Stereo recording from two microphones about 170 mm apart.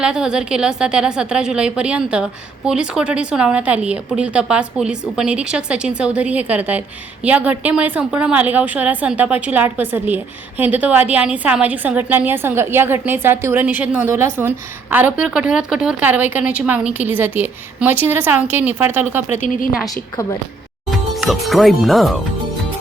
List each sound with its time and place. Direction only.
0.0 s a woman's voice: 5° right (ahead or behind)
19.4 s speech: 55° left (ahead or behind)
20.9 s speech: centre (ahead or behind)